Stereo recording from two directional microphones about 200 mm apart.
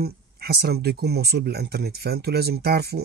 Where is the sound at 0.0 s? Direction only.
50° right (ahead or behind).